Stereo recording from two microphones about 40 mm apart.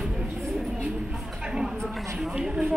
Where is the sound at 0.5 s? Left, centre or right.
Centre.